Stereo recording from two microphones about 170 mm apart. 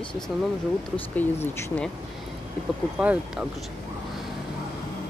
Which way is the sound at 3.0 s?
10° right (ahead or behind).